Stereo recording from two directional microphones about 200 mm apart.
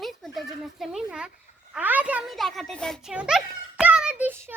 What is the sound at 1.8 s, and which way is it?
A child's voice, 10° right (ahead or behind).